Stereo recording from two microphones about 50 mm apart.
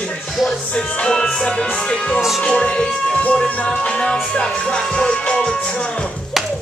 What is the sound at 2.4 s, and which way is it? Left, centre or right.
Music, centre.